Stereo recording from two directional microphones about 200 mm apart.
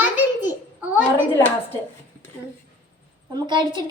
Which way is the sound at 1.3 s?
10° left (ahead or behind).